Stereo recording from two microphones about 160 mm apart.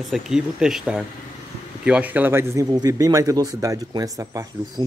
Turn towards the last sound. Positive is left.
turn(degrees=-20)  # may be behind; listen again after turning